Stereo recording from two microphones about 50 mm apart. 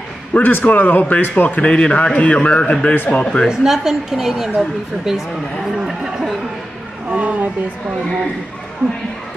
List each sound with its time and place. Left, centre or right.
0.3 s a man's voice: left
3.4 s a woman's voice: centre
7.1 s a woman's voice: right